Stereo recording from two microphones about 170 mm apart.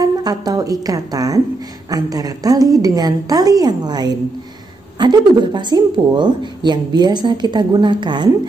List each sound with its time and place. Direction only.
0.0 s speech: 25° right (ahead or behind)